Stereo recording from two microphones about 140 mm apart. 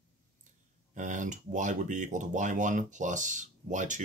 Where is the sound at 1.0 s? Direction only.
65° right (ahead or behind).